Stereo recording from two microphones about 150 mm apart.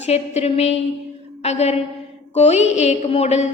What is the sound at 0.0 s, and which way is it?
A woman's voice, 45° left (ahead or behind).